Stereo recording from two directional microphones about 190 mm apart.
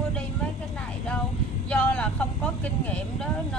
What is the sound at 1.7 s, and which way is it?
Speech, 5° left (ahead or behind).